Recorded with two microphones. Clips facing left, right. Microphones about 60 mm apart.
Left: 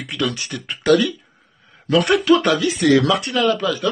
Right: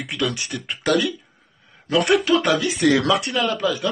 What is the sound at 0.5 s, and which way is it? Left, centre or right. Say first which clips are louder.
Speech: left 8 dB; centre.